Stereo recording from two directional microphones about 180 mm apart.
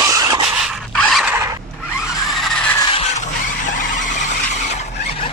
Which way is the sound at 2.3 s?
5° left (ahead or behind).